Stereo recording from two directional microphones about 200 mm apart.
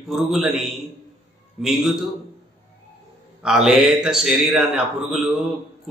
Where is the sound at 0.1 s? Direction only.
Centre (ahead or behind).